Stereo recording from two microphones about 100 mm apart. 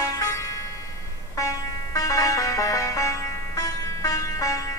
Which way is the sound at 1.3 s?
35° left (ahead or behind).